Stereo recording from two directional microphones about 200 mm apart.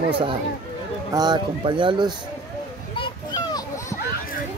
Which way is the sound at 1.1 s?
20° right (ahead or behind).